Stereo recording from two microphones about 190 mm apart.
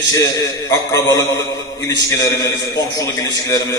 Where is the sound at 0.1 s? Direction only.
15° left (ahead or behind).